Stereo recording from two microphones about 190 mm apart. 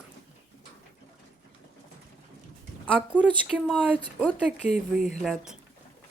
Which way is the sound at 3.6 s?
5° right (ahead or behind).